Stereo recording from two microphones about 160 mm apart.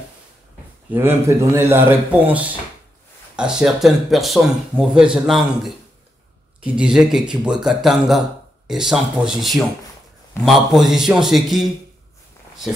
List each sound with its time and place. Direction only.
0.9 s speech: 15° right (ahead or behind); by 11.6 s centre (ahead or behind)